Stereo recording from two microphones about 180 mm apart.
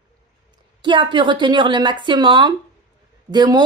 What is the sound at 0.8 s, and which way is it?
Speech, 25° right (ahead or behind).